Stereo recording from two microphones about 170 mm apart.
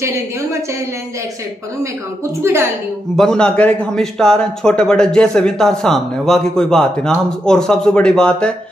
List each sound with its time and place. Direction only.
0.0 s a woman's voice: 15° right (ahead or behind)
2.4 s a woman's voice: 15° right (ahead or behind)
3.2 s a man's voice: 5° left (ahead or behind)